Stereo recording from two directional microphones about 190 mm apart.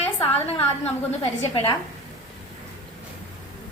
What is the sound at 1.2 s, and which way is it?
Speech, 30° left (ahead or behind).